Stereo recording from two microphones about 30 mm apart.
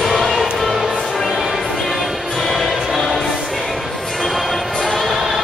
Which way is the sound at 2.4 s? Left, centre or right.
Centre.